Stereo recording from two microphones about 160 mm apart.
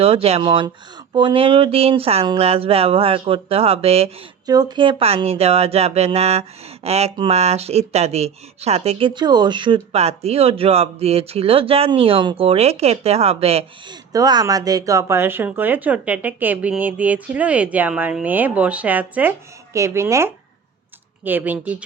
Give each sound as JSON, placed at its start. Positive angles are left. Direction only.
{"t": 0.0, "sound": "speech", "side_deg": -40}
{"t": 4.4, "sound": "speech", "side_deg": -25}